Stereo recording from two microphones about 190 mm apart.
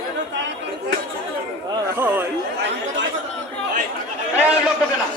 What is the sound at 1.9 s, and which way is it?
Speech, 10° right (ahead or behind).